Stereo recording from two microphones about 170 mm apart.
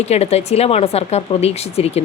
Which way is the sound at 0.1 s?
40° left (ahead or behind).